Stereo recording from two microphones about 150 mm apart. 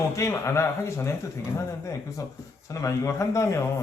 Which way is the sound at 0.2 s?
20° left (ahead or behind).